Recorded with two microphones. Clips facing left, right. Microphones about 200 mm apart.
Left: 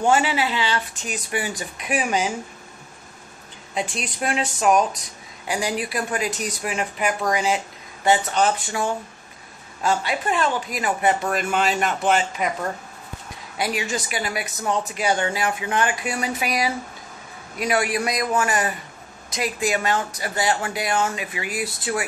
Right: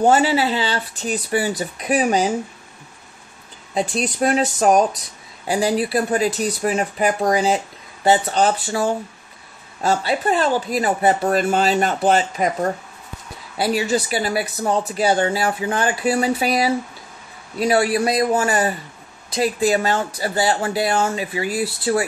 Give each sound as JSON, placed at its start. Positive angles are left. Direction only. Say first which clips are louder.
{"t": 0.0, "sound": "speech", "louder": "right 4 dB", "side_deg": -35}
{"t": 3.7, "sound": "speech", "louder": "right 6 dB", "side_deg": -35}
{"t": 13.6, "sound": "speech", "louder": "right 6 dB", "side_deg": -35}